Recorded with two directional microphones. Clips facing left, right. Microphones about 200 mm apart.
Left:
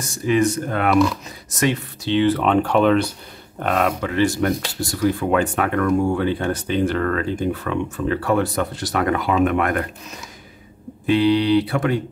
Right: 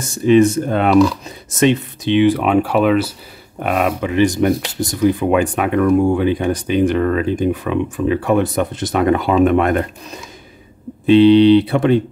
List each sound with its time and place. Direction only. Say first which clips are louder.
0.2 s speech: right 7 dB; 25° right (ahead or behind)
11.1 s speech: right 8 dB; 25° right (ahead or behind)